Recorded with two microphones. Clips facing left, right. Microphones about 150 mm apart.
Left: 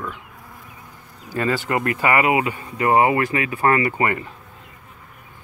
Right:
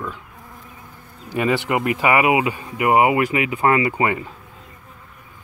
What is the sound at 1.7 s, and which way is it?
Speech, 15° right (ahead or behind).